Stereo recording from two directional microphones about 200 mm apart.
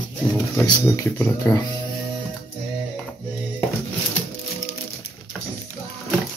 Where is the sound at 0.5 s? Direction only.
15° left (ahead or behind).